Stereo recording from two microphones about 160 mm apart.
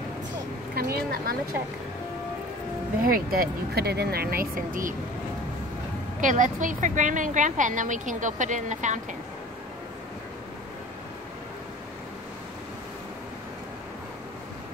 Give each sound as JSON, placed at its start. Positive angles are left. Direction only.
{"t": 0.7, "sound": "speech", "side_deg": -75}
{"t": 3.1, "sound": "speech", "side_deg": -65}
{"t": 6.2, "sound": "a woman's voice", "side_deg": -55}